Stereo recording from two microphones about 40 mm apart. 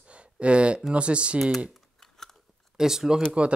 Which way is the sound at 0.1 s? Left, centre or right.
Right.